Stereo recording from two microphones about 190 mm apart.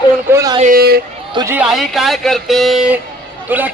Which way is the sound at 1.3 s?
15° right (ahead or behind).